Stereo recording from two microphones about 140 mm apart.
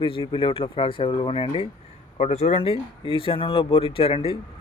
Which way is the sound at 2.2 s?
55° left (ahead or behind).